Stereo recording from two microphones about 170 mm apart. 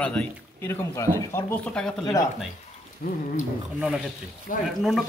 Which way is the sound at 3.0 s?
55° left (ahead or behind).